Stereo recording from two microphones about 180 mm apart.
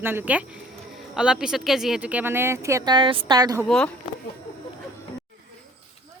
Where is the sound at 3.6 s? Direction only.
5° left (ahead or behind).